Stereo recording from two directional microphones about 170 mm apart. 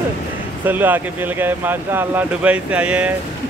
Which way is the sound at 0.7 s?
10° right (ahead or behind).